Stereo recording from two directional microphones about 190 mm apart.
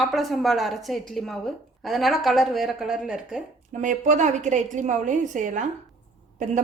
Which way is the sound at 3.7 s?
40° right (ahead or behind).